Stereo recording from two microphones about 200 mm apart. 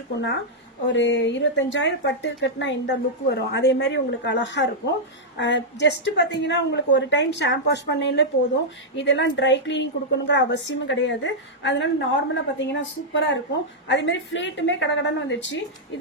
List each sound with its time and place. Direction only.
0.1 s a woman's voice: 65° left (ahead or behind)